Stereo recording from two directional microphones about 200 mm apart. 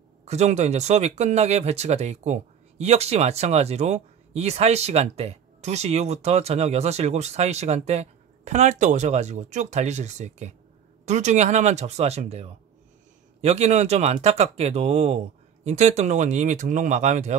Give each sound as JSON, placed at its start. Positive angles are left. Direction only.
{"t": 0.2, "sound": "speech", "side_deg": -35}